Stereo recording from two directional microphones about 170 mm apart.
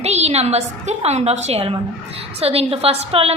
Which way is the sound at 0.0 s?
40° right (ahead or behind).